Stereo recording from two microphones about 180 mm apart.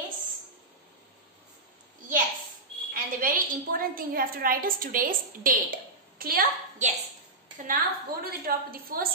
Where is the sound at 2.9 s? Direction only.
50° right (ahead or behind).